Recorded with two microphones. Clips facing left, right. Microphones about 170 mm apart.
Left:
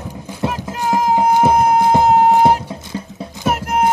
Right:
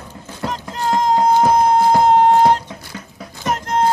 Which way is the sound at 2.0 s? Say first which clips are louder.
Even; 5° left (ahead or behind).